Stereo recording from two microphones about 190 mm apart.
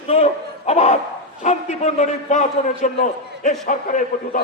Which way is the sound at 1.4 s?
35° left (ahead or behind).